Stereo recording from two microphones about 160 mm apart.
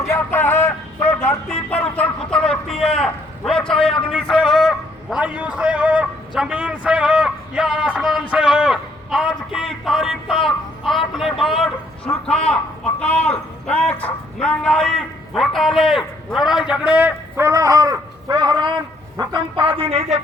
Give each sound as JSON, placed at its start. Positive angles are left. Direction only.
{"t": 0.1, "sound": "music", "side_deg": 15}
{"t": 1.7, "sound": "a man's voice", "side_deg": 10}